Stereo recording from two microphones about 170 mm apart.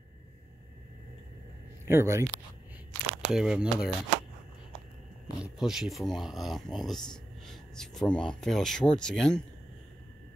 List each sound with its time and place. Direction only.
1.9 s speech: 15° right (ahead or behind)
3.1 s speech: 5° right (ahead or behind)
5.4 s speech: centre (ahead or behind)